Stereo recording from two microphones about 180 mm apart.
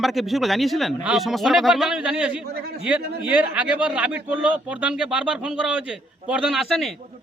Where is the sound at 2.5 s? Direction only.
60° right (ahead or behind).